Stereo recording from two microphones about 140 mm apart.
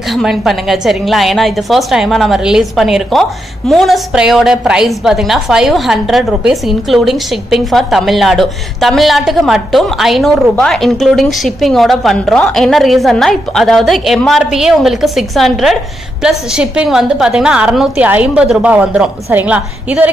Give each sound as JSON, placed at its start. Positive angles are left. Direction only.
{"t": 0.1, "sound": "a woman's voice", "side_deg": 0}